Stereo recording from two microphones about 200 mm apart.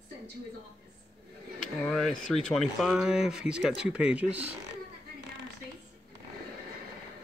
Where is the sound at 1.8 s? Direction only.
Centre (ahead or behind).